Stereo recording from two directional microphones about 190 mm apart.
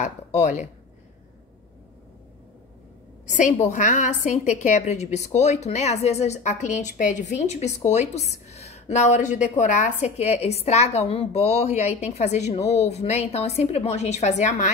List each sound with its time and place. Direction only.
0.0 s speech: 40° left (ahead or behind)
3.3 s a woman's voice: 40° left (ahead or behind)